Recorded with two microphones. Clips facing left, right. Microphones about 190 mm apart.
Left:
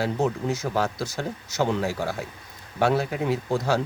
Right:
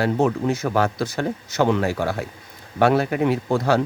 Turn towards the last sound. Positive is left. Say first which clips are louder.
# right 4 dB
turn(degrees=-60)  # may be behind; listen again after turning